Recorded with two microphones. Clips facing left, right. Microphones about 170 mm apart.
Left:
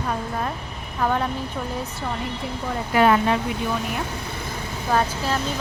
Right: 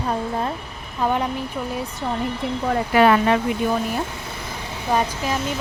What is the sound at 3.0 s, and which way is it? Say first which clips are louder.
Speech: right 2 dB; 75° right (ahead or behind).